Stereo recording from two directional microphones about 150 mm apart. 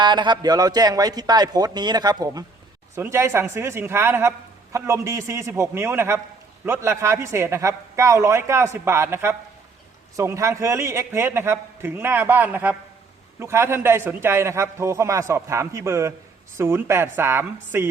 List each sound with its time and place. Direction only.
0.0 s a man's voice: 30° right (ahead or behind)